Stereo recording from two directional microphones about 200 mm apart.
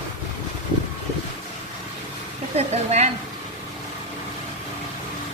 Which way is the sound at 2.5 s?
35° right (ahead or behind).